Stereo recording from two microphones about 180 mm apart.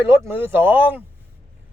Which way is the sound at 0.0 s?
10° right (ahead or behind).